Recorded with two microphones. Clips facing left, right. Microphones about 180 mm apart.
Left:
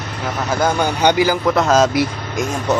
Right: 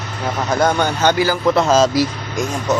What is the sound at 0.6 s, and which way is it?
Speech, 10° left (ahead or behind).